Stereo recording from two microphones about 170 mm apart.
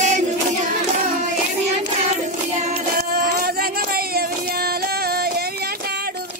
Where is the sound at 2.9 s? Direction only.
60° right (ahead or behind).